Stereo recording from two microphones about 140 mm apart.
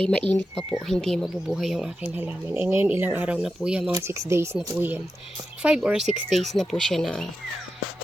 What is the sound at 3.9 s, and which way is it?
Speech, 20° right (ahead or behind).